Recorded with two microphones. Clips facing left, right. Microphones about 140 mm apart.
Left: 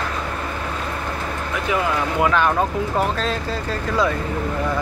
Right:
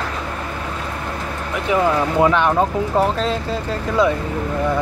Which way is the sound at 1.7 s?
25° right (ahead or behind).